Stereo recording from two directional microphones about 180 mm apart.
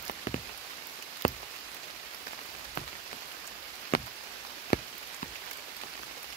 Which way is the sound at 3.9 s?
55° left (ahead or behind).